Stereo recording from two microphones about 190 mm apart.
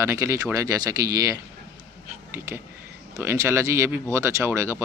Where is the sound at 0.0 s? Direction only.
15° right (ahead or behind).